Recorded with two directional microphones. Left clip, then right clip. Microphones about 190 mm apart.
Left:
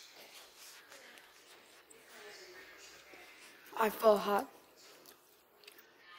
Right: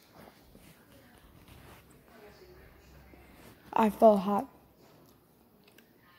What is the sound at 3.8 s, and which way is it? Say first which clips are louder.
Speech: right 6 dB; 10° left (ahead or behind).